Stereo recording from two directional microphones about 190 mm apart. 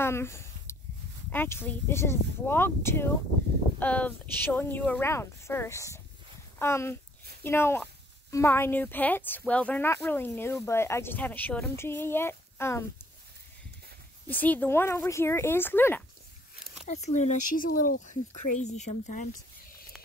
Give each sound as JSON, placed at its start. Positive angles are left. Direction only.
{"t": 0.0, "sound": "a sound", "side_deg": 15}
{"t": 1.3, "sound": "speech", "side_deg": 10}
{"t": 14.2, "sound": "speech", "side_deg": 10}
{"t": 16.8, "sound": "speech", "side_deg": 35}